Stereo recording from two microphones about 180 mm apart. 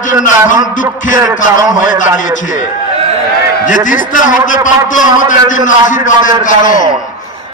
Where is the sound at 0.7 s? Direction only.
45° left (ahead or behind).